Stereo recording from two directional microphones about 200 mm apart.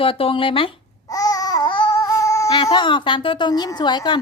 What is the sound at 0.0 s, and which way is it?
Speech, 25° left (ahead or behind).